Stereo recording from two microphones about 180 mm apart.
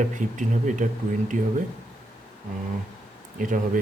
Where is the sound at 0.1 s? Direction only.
45° right (ahead or behind).